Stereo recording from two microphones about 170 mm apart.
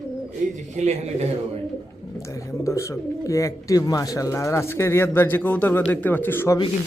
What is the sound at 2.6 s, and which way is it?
Speech, 15° left (ahead or behind).